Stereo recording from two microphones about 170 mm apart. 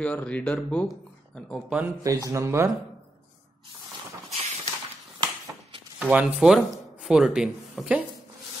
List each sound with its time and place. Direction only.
0.0 s speech: 10° left (ahead or behind)
2.0 s a man's voice: 20° right (ahead or behind)
4.3 s a sound: 40° right (ahead or behind)
5.9 s speech: 5° right (ahead or behind)